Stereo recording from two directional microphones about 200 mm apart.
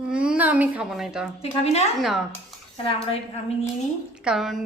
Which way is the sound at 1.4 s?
30° left (ahead or behind).